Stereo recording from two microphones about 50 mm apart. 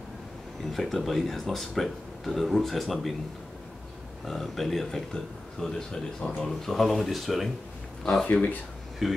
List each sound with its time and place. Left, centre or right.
0.7 s speech: centre
4.3 s a man's voice: centre
8.3 s speech: left
9.0 s speech: centre